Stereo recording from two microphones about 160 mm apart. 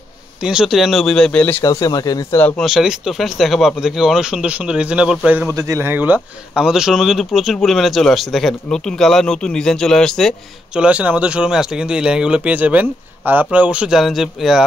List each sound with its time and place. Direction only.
0.4 s speech: 5° right (ahead or behind)
1.6 s speech: 20° left (ahead or behind)
2.4 s speech: centre (ahead or behind)
5.5 s speech: 20° right (ahead or behind); by 14.6 s centre (ahead or behind)